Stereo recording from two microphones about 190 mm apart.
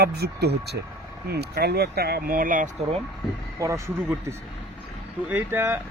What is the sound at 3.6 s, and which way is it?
Speech, 15° right (ahead or behind).